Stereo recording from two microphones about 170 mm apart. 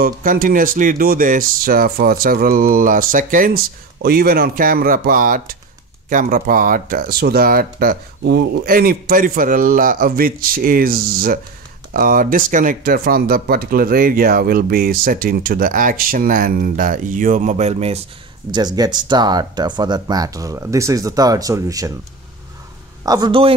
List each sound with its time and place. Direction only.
0.0 s speech: 55° right (ahead or behind); by 18.0 s 40° right (ahead or behind)
18.5 s speech: 25° right (ahead or behind)
23.0 s speech: 25° right (ahead or behind)